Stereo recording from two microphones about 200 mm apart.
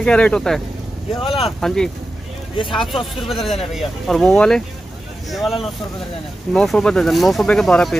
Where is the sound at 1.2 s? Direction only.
30° left (ahead or behind).